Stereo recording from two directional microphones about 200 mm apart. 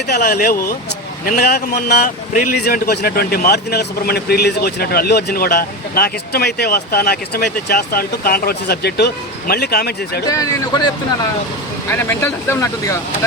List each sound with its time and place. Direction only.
0.1 s a man's voice: 50° left (ahead or behind)
10.2 s speech: 15° left (ahead or behind)
11.9 s speech: 10° left (ahead or behind)